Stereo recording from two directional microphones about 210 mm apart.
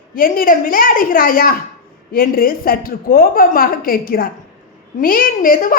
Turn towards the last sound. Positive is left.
turn(degrees=40)  # may be behind; listen again after turning